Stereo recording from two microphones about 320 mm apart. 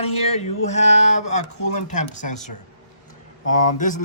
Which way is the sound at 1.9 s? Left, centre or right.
Left.